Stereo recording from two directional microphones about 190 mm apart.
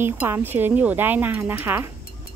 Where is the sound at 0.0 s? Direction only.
10° right (ahead or behind).